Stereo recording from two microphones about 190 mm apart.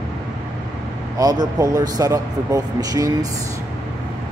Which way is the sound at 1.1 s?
20° right (ahead or behind).